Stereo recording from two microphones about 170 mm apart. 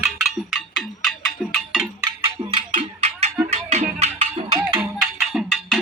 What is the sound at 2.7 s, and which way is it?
Music, 40° right (ahead or behind).